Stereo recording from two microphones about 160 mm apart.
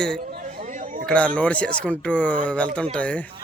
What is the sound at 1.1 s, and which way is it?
A man's voice, 5° left (ahead or behind).